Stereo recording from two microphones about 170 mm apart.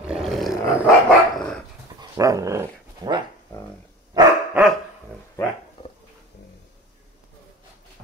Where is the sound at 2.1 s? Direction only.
20° right (ahead or behind).